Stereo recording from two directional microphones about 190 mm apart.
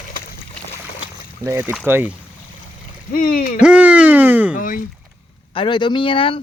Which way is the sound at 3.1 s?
50° left (ahead or behind).